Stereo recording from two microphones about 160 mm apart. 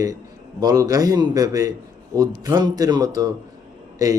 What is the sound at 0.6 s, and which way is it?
A man's voice, 25° right (ahead or behind).